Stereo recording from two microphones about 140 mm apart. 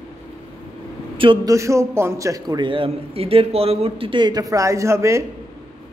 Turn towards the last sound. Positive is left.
turn(degrees=-20)  # may be behind; listen again after turning